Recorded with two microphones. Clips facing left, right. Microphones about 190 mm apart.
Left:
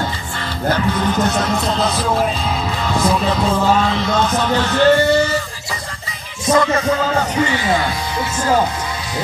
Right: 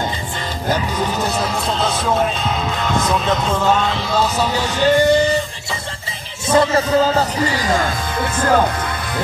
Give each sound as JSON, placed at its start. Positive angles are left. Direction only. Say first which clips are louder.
{"t": 0.7, "sound": "music", "louder": "left 3 dB", "side_deg": -10}
{"t": 6.5, "sound": "speech", "louder": "right 1 dB", "side_deg": -30}